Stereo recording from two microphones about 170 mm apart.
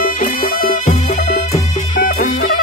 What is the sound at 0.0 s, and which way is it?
Music, 55° left (ahead or behind).